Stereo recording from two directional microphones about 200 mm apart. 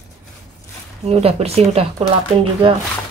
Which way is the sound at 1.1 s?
30° right (ahead or behind).